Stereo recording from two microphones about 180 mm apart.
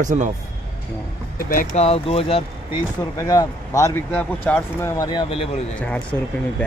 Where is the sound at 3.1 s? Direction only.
20° left (ahead or behind).